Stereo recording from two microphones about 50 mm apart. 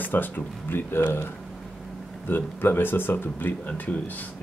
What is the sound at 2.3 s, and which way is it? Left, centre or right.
Speech, left.